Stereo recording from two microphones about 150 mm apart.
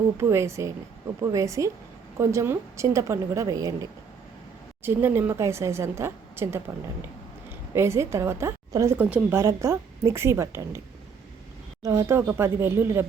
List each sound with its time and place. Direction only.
0.2 s a woman's voice: 15° right (ahead or behind)
4.8 s a woman's voice: 15° right (ahead or behind)
7.7 s a woman's voice: 20° right (ahead or behind)
11.8 s a woman's voice: 20° right (ahead or behind)